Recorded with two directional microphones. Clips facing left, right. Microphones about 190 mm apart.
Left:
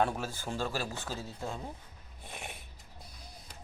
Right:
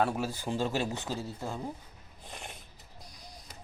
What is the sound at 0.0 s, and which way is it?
Speech, 10° right (ahead or behind).